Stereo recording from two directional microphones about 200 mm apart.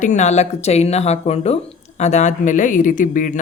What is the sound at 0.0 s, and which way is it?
Speech, 35° left (ahead or behind).